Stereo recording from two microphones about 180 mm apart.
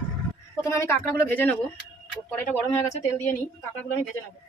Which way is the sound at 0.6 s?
15° left (ahead or behind).